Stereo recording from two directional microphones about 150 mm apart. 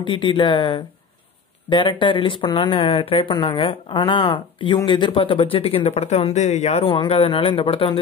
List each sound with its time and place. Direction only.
0.0 s speech: 30° left (ahead or behind)
6.9 s speech: 35° left (ahead or behind)